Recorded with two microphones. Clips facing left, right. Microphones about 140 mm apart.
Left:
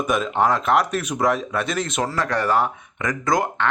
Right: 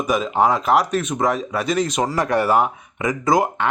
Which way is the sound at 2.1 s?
15° right (ahead or behind).